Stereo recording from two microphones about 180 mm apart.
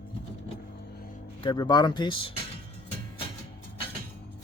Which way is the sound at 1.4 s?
25° left (ahead or behind).